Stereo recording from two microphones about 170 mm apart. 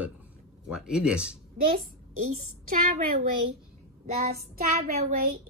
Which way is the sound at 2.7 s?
55° right (ahead or behind).